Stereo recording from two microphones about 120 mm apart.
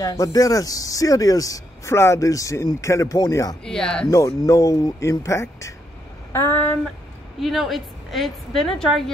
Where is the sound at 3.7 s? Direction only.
5° left (ahead or behind).